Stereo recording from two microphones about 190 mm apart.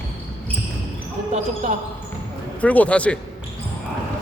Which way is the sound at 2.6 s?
5° left (ahead or behind).